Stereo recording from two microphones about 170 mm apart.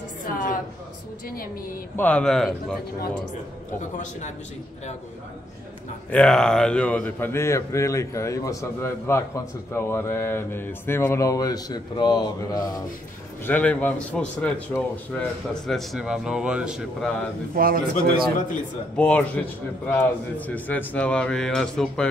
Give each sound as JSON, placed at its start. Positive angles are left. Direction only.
{"t": 0.3, "sound": "a sound", "side_deg": 55}
{"t": 2.0, "sound": "a man's voice", "side_deg": 5}
{"t": 6.1, "sound": "a man's voice", "side_deg": 5}
{"t": 13.5, "sound": "a man's voice", "side_deg": 10}
{"t": 17.6, "sound": "speech", "side_deg": -60}
{"t": 18.9, "sound": "a man's voice", "side_deg": 5}